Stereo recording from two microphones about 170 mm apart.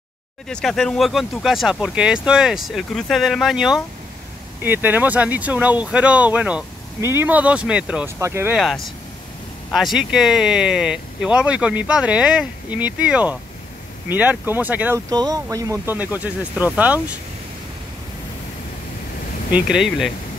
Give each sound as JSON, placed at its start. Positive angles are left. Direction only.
{"t": 0.5, "sound": "speech", "side_deg": 5}
{"t": 8.5, "sound": "speech", "side_deg": 0}
{"t": 15.0, "sound": "speech", "side_deg": -20}
{"t": 19.5, "sound": "speech", "side_deg": -5}